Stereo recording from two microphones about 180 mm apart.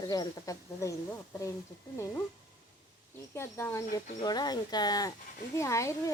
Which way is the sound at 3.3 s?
15° left (ahead or behind).